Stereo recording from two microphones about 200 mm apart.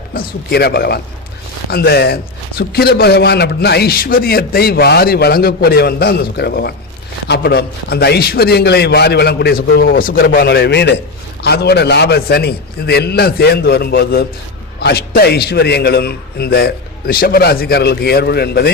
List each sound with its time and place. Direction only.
0.1 s a man's voice: 50° left (ahead or behind)